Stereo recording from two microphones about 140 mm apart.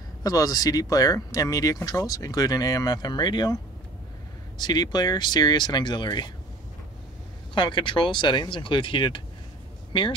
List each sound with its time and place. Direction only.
0.2 s speech: 25° left (ahead or behind)
4.6 s speech: 30° left (ahead or behind)
7.5 s speech: 35° left (ahead or behind)